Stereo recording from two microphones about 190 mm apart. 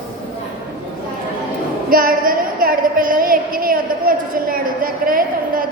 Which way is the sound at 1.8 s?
50° right (ahead or behind).